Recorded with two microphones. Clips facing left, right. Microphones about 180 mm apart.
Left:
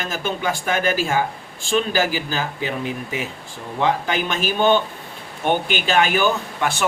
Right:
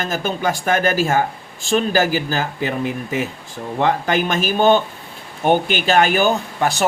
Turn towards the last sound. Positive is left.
turn(degrees=-40)  # may be behind; listen again after turning